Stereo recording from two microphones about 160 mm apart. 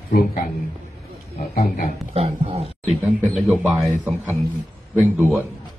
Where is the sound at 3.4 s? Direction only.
5° right (ahead or behind).